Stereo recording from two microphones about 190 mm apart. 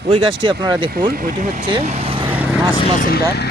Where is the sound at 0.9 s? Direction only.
50° right (ahead or behind).